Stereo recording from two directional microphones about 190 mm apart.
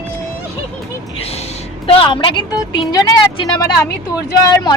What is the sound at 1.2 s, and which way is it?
A woman's voice, 30° left (ahead or behind).